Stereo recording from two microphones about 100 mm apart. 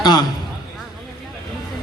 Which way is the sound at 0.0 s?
45° left (ahead or behind).